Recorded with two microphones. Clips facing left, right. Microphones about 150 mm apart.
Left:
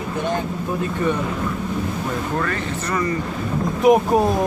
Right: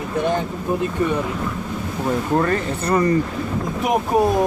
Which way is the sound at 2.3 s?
30° right (ahead or behind).